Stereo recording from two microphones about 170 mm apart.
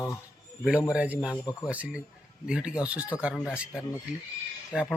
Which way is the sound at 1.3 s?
10° left (ahead or behind).